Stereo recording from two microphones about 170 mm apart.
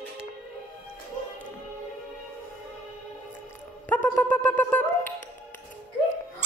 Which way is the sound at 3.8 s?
10° left (ahead or behind).